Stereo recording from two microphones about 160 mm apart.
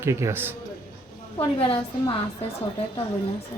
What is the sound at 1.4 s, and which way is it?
Speech, 35° left (ahead or behind).